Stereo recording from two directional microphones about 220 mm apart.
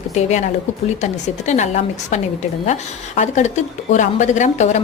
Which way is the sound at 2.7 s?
30° left (ahead or behind).